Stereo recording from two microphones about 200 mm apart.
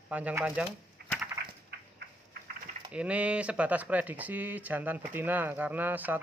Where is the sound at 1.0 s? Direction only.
55° right (ahead or behind).